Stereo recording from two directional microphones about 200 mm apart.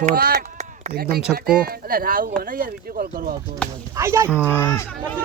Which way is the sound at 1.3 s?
50° right (ahead or behind).